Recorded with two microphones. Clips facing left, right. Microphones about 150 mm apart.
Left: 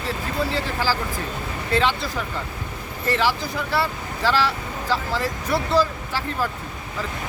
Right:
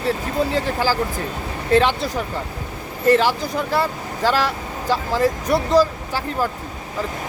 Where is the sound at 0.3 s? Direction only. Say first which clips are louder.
Right 2 dB; 45° right (ahead or behind).